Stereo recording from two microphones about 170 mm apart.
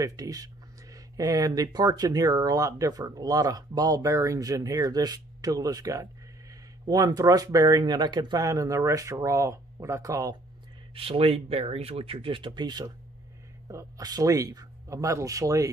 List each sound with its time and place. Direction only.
0.0 s speech: 20° right (ahead or behind)
11.0 s speech: 35° right (ahead or behind)